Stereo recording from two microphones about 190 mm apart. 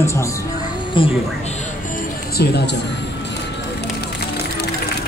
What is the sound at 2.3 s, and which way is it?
Speech, 60° left (ahead or behind).